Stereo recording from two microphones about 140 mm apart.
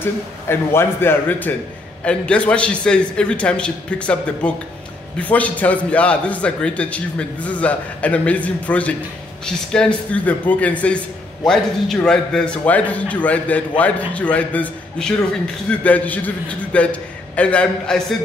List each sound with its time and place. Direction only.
0.0 s a man's voice: 15° left (ahead or behind)